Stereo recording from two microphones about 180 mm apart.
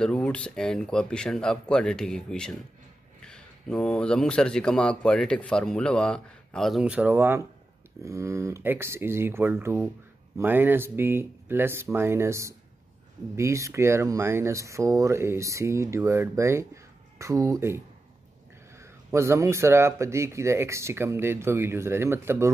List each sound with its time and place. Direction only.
0.0 s a man's voice: 5° left (ahead or behind); by 22.5 s 15° right (ahead or behind)